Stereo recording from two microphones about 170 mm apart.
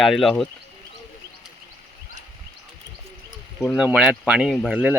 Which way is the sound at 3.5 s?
Centre (ahead or behind).